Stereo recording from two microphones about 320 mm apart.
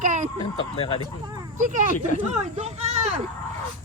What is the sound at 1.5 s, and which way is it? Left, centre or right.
Speech, right.